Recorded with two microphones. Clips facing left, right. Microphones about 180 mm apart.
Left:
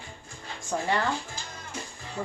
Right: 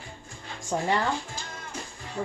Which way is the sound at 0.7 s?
25° right (ahead or behind).